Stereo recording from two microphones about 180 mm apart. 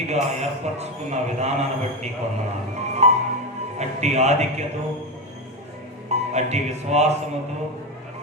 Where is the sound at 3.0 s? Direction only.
40° right (ahead or behind).